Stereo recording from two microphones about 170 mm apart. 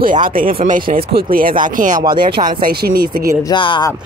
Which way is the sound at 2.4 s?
60° right (ahead or behind).